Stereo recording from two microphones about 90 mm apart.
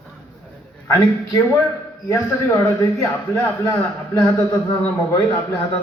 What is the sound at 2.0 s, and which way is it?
Speech, 35° left (ahead or behind).